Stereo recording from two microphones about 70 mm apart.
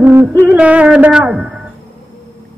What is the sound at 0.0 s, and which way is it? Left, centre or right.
Music, right.